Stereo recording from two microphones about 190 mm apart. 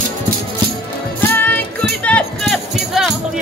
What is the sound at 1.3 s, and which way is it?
Music, 10° left (ahead or behind).